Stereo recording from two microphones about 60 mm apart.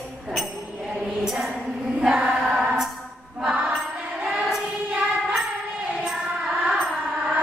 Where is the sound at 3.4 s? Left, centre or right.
Centre.